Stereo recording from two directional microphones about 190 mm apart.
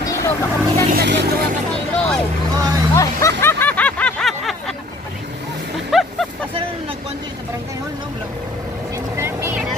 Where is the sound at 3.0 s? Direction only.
15° left (ahead or behind).